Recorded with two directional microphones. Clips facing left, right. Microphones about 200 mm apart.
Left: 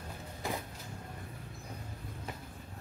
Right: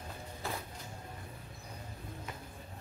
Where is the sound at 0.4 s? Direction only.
15° left (ahead or behind).